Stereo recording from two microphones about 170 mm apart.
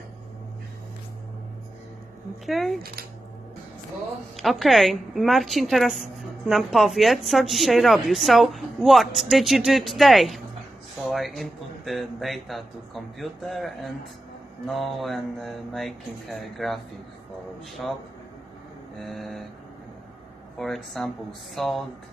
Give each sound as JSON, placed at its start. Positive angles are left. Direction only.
{"t": 2.4, "sound": "a woman's voice", "side_deg": 0}
{"t": 4.4, "sound": "a woman's voice", "side_deg": 0}
{"t": 17.8, "sound": "a woman's voice", "side_deg": 5}
{"t": 20.5, "sound": "a woman's voice", "side_deg": 0}